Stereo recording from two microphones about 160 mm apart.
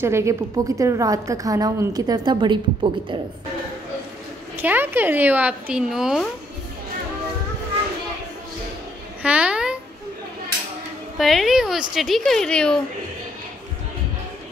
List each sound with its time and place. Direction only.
0.0 s a woman's voice: 15° right (ahead or behind)
4.6 s a woman's voice: 10° right (ahead or behind)
9.2 s a sound: 10° right (ahead or behind)
11.1 s a woman's voice: centre (ahead or behind)